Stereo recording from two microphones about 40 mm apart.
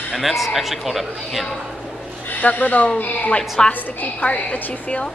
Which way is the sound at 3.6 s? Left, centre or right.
Centre.